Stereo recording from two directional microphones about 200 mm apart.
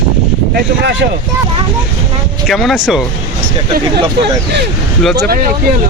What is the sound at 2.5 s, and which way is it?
Speech, centre (ahead or behind).